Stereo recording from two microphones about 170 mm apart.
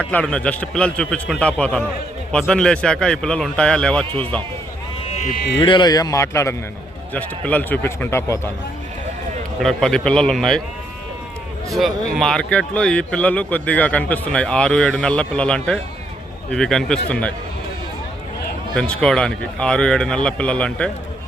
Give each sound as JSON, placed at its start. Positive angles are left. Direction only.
{"t": 0.0, "sound": "a man's voice", "side_deg": 10}
{"t": 5.6, "sound": "a man's voice", "side_deg": 25}
{"t": 9.6, "sound": "speech", "side_deg": 5}
{"t": 11.7, "sound": "speech", "side_deg": 0}
{"t": 18.7, "sound": "speech", "side_deg": 5}